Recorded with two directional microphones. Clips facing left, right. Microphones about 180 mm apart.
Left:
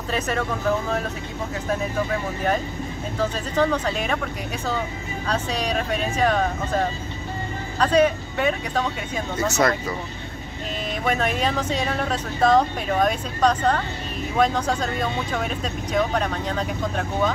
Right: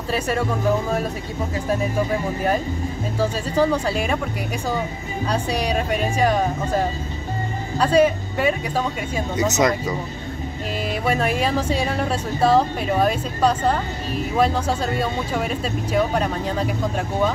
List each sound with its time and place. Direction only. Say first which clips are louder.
0.1 s speech: right 3 dB; 10° right (ahead or behind)
3.2 s speech: right 2 dB; 10° right (ahead or behind)
11.1 s speech: right 1 dB; 10° right (ahead or behind)